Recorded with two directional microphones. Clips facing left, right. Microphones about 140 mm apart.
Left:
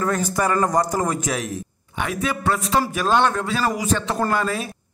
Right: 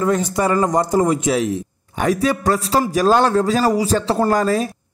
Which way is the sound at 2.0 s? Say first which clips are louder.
Right 7 dB; 35° right (ahead or behind).